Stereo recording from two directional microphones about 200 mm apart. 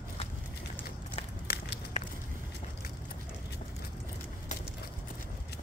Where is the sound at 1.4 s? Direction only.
50° left (ahead or behind).